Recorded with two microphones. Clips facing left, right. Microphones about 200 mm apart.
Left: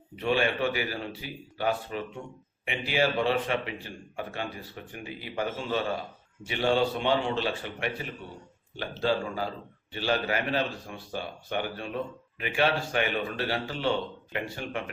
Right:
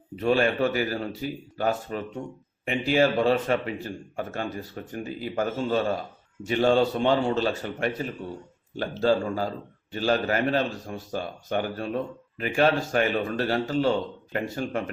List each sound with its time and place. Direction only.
0.2 s a man's voice: 40° right (ahead or behind)